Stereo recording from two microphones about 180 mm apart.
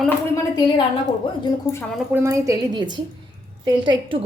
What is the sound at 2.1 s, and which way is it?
A woman's voice, 15° right (ahead or behind).